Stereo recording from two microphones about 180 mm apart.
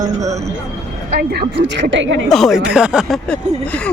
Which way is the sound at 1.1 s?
65° right (ahead or behind).